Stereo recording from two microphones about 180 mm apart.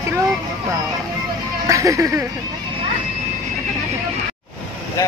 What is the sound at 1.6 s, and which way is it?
Speech, 15° right (ahead or behind).